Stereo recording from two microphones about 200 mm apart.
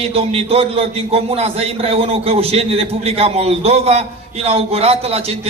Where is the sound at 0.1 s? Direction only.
30° right (ahead or behind).